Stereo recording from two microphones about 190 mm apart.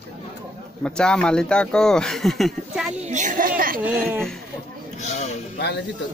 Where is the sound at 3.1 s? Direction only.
40° right (ahead or behind).